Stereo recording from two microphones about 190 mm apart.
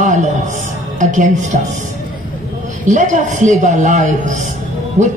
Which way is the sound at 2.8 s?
40° right (ahead or behind).